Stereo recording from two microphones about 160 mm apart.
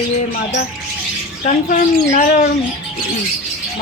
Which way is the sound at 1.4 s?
50° left (ahead or behind).